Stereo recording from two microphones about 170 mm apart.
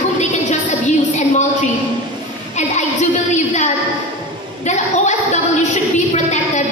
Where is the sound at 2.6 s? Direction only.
45° left (ahead or behind).